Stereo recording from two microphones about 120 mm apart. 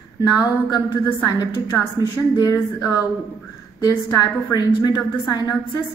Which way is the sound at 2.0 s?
30° left (ahead or behind).